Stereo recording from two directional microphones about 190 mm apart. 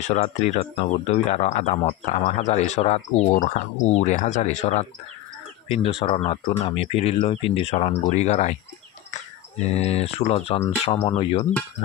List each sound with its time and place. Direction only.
0.0 s speech: 35° left (ahead or behind)